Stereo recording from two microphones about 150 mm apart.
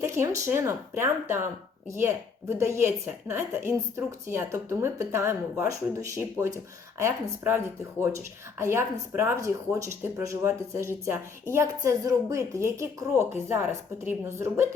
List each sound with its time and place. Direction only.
0.0 s a woman's voice: 20° right (ahead or behind)